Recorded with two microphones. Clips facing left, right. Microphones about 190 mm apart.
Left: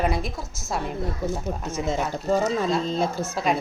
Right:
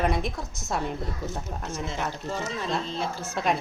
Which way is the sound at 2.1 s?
40° left (ahead or behind).